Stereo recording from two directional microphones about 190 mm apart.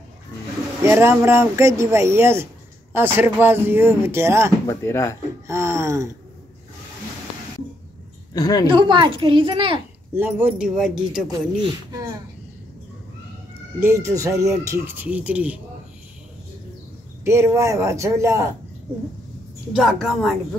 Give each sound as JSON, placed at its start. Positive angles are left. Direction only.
{"t": 0.8, "sound": "speech", "side_deg": -10}
{"t": 4.6, "sound": "speech", "side_deg": 15}
{"t": 5.5, "sound": "speech", "side_deg": -15}
{"t": 8.3, "sound": "a woman's voice", "side_deg": 20}
{"t": 8.6, "sound": "a woman's voice", "side_deg": -25}
{"t": 10.1, "sound": "speech", "side_deg": -10}
{"t": 11.6, "sound": "a woman's voice", "side_deg": -20}
{"t": 13.7, "sound": "speech", "side_deg": -15}
{"t": 17.2, "sound": "speech", "side_deg": -15}
{"t": 19.7, "sound": "speech", "side_deg": 0}